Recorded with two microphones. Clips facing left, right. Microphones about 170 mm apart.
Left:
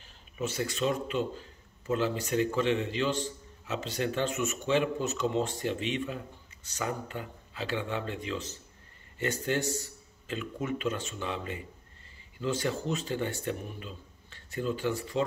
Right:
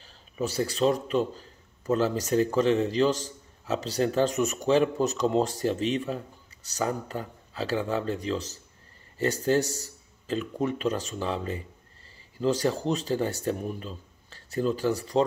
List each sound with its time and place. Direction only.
0.0 s a man's voice: 35° right (ahead or behind)